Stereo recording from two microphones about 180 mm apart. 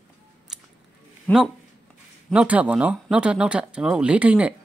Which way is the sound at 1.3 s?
10° left (ahead or behind).